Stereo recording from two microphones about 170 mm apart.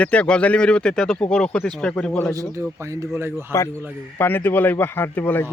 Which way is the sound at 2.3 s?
20° right (ahead or behind).